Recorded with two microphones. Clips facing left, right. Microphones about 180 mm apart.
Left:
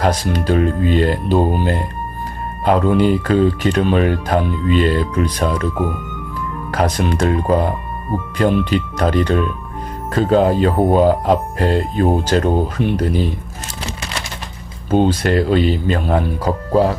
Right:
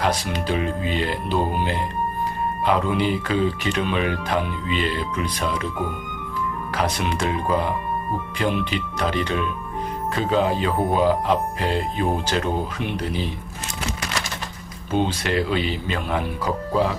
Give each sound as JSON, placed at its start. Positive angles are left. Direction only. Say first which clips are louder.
{"t": 0.0, "sound": "speech", "louder": "left 6 dB", "side_deg": 40}
{"t": 6.7, "sound": "speech", "louder": "left 7 dB", "side_deg": 45}
{"t": 14.8, "sound": "speech", "louder": "left 8 dB", "side_deg": 45}